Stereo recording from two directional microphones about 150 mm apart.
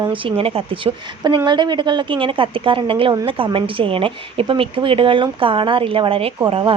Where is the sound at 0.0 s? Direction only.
35° right (ahead or behind).